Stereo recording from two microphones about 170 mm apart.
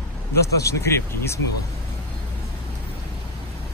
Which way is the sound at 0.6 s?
15° left (ahead or behind).